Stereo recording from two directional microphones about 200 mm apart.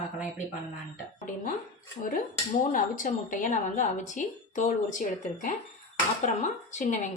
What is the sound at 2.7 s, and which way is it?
A woman's voice, 40° left (ahead or behind).